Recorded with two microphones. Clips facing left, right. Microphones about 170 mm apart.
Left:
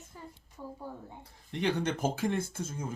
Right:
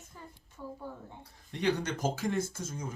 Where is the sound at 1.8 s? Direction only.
55° left (ahead or behind).